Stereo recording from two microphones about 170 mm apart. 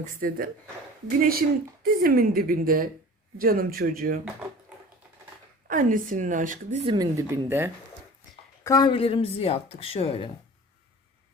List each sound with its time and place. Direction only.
0.0 s speech: 55° right (ahead or behind)
5.6 s a woman's voice: 55° right (ahead or behind)
6.8 s speech: 25° right (ahead or behind)
8.6 s a woman's voice: 20° left (ahead or behind)